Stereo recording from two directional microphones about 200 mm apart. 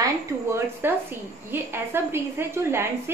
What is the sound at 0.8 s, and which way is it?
A woman's voice, 10° right (ahead or behind).